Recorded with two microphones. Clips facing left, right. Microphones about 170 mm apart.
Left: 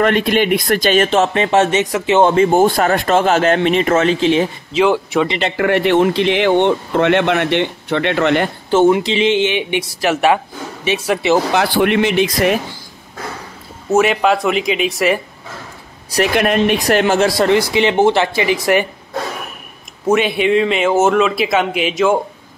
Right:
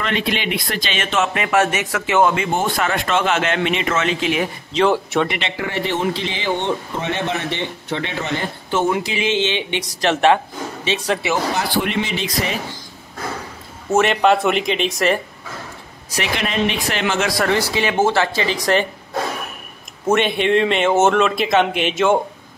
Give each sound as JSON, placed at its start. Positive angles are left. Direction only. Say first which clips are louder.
{"t": 0.0, "sound": "speech", "louder": "left 8 dB", "side_deg": 50}
{"t": 2.3, "sound": "speech", "louder": "left 9 dB", "side_deg": 35}
{"t": 4.7, "sound": "a man's voice", "louder": "left 3 dB", "side_deg": 0}
{"t": 5.6, "sound": "speech", "louder": "left 10 dB", "side_deg": 65}
{"t": 8.6, "sound": "speech", "louder": "left 7 dB", "side_deg": 25}
{"t": 11.5, "sound": "speech", "louder": "left 7 dB", "side_deg": 65}
{"t": 13.8, "sound": "a man's voice", "louder": "left 2 dB", "side_deg": 0}
{"t": 16.3, "sound": "speech", "louder": "left 6 dB", "side_deg": 50}
{"t": 20.1, "sound": "a man's voice", "louder": "left 3 dB", "side_deg": 5}